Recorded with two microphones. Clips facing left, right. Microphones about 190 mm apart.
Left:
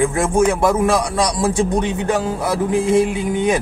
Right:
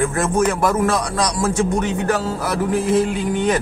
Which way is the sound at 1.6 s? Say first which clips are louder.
Even; 15° left (ahead or behind).